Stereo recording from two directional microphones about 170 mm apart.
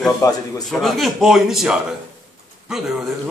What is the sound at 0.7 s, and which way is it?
A man's voice, centre (ahead or behind).